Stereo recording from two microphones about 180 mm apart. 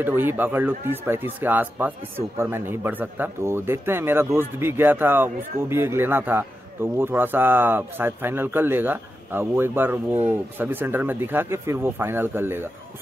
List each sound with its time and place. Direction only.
0.0 s speech: 10° right (ahead or behind)